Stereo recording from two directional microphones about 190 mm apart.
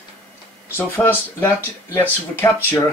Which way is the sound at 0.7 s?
10° left (ahead or behind).